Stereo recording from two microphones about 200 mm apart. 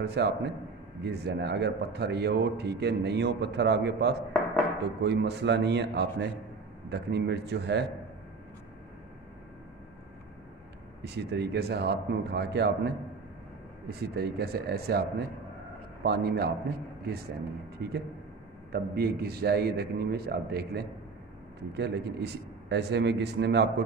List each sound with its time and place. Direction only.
0.0 s a man's voice: 55° right (ahead or behind)
11.0 s a man's voice: 55° right (ahead or behind)
17.7 s a man's voice: 55° right (ahead or behind)